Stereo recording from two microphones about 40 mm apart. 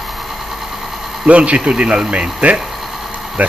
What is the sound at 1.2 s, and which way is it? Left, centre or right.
Speech, right.